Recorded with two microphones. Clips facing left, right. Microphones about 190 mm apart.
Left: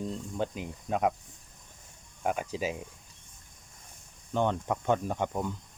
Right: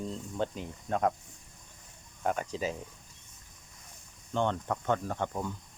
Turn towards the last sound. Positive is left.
turn(degrees=15)  # may be behind; listen again after turning